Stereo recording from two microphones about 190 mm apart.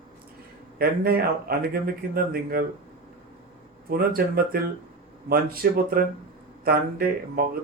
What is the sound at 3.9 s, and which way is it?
Speech, 50° right (ahead or behind).